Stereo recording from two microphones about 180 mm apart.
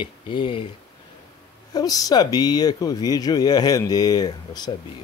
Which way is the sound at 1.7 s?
20° left (ahead or behind).